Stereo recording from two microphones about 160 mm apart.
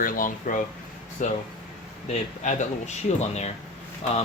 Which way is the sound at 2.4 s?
50° left (ahead or behind).